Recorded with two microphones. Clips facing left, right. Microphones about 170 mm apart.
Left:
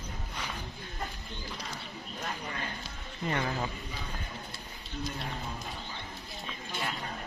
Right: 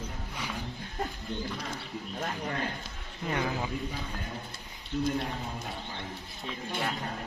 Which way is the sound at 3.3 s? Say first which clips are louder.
Right 1 dB; 5° right (ahead or behind).